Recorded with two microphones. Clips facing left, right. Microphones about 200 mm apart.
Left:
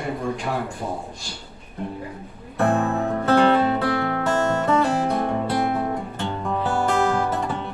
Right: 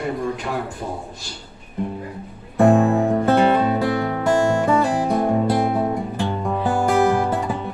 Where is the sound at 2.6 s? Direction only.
15° right (ahead or behind).